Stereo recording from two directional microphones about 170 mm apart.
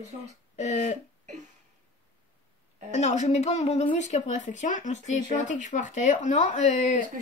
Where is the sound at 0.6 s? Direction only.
45° left (ahead or behind).